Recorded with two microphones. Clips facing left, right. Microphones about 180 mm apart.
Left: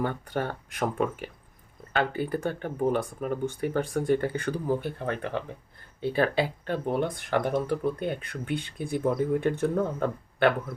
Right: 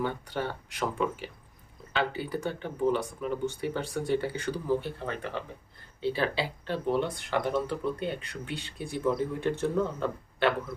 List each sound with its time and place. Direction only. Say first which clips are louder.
0.0 s speech: left 2 dB; 50° left (ahead or behind)